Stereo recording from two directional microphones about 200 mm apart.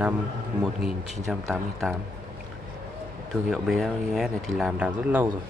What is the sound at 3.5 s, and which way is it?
Speech, centre (ahead or behind).